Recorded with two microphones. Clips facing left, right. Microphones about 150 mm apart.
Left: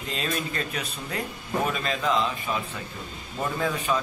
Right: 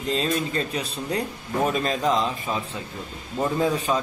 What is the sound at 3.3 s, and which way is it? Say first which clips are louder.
Speech: right 5 dB; 25° right (ahead or behind).